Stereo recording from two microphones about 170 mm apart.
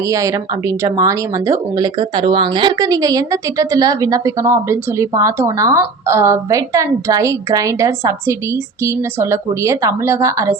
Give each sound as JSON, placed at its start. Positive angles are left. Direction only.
{"t": 0.0, "sound": "speech", "side_deg": -20}